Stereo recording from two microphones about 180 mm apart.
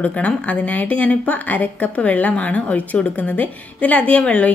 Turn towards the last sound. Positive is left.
turn(degrees=5)  # may be behind; listen again after turning